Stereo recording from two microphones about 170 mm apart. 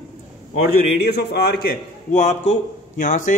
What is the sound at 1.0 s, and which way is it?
Speech, 70° left (ahead or behind).